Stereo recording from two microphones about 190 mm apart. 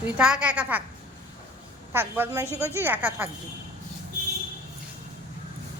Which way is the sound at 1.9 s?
10° right (ahead or behind).